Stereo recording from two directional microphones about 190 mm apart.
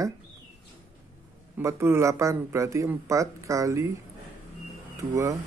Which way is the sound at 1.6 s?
15° right (ahead or behind).